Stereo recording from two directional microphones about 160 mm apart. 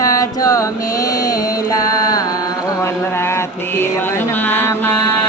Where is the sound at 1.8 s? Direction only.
20° left (ahead or behind).